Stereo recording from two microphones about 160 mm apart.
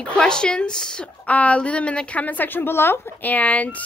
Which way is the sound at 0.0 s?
5° left (ahead or behind).